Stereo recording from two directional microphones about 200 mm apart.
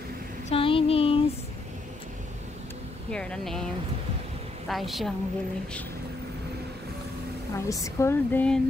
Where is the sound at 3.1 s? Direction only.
5° left (ahead or behind).